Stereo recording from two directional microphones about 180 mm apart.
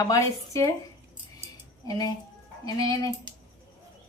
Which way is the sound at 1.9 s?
20° left (ahead or behind).